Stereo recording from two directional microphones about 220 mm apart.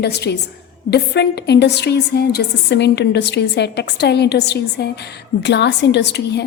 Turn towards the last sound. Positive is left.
turn(degrees=50)  # may be behind; listen again after turning